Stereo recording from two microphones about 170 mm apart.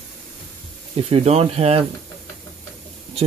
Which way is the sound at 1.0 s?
35° right (ahead or behind).